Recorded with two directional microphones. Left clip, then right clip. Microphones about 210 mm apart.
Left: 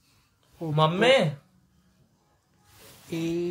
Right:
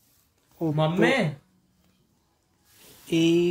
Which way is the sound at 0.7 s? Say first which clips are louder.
Left 3 dB; 50° left (ahead or behind).